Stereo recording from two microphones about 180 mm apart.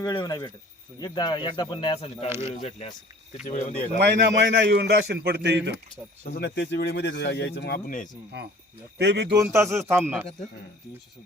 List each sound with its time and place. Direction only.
0.0 s speech: 20° left (ahead or behind); by 3.8 s 35° left (ahead or behind)
3.9 s a man's voice: 70° right (ahead or behind)
6.2 s speech: 60° left (ahead or behind)
7.9 s speech: 45° left (ahead or behind)
8.3 s a man's voice: 70° right (ahead or behind)
9.3 s speech: 15° right (ahead or behind)